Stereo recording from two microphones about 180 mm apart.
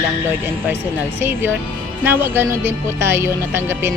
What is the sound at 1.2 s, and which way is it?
Speech, 15° right (ahead or behind).